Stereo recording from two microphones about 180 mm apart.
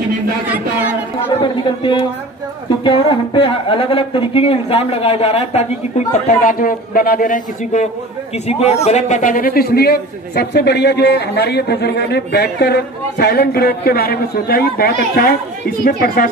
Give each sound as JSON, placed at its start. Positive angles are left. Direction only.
{"t": 1.8, "sound": "a woman's voice", "side_deg": 25}
{"t": 6.4, "sound": "a man's voice", "side_deg": 50}